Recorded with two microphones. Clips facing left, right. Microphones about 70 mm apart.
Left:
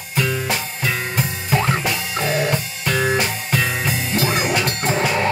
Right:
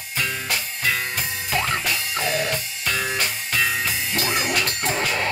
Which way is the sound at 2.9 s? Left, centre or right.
Left.